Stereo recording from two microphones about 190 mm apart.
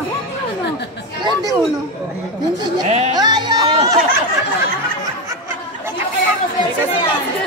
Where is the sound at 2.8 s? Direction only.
35° right (ahead or behind).